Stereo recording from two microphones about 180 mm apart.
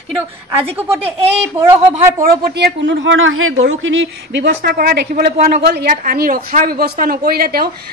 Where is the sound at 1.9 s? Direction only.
50° right (ahead or behind).